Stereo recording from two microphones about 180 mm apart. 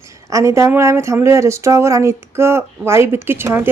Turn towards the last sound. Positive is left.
turn(degrees=-15)  # may be behind; listen again after turning